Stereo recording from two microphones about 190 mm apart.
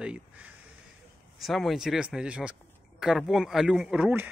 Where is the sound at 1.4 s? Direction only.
Centre (ahead or behind).